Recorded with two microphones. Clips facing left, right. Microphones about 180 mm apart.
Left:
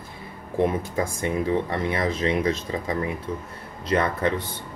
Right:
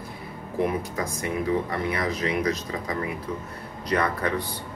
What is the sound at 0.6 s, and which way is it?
Speech, 25° left (ahead or behind).